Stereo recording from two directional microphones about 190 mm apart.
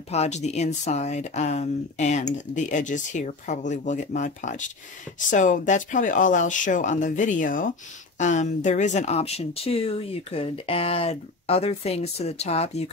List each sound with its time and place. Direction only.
0.1 s speech: 35° left (ahead or behind)